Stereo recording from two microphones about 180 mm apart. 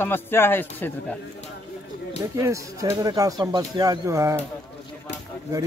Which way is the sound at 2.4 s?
15° right (ahead or behind).